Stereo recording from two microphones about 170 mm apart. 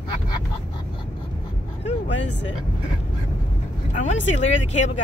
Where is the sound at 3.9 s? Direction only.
45° left (ahead or behind).